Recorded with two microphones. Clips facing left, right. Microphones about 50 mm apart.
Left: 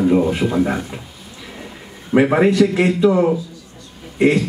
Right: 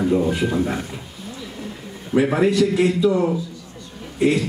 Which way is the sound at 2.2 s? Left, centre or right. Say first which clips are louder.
Left 3 dB; left.